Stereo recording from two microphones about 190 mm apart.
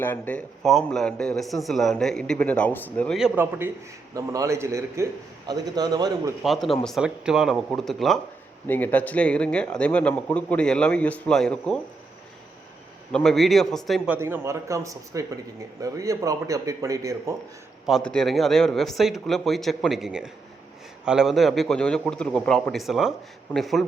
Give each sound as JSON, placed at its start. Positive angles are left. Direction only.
{"t": 0.0, "sound": "speech", "side_deg": 10}
{"t": 3.2, "sound": "speech", "side_deg": -5}
{"t": 4.1, "sound": "a man's voice", "side_deg": -15}
{"t": 6.4, "sound": "speech", "side_deg": 0}
{"t": 13.1, "sound": "speech", "side_deg": 5}
{"t": 14.2, "sound": "a man's voice", "side_deg": -15}
{"t": 17.8, "sound": "speech", "side_deg": 0}